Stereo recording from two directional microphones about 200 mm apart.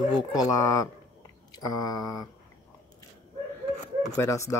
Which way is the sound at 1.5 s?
20° left (ahead or behind).